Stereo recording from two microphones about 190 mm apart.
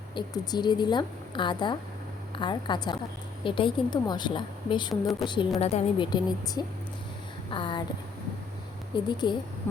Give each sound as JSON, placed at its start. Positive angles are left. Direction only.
{"t": 0.1, "sound": "a woman's voice", "side_deg": 25}
{"t": 6.1, "sound": "a woman's voice", "side_deg": 20}
{"t": 9.0, "sound": "a woman's voice", "side_deg": 25}